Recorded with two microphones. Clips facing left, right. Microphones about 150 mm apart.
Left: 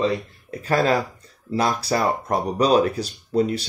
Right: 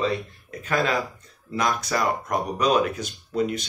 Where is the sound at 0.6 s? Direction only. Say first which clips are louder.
Left 4 dB; 35° left (ahead or behind).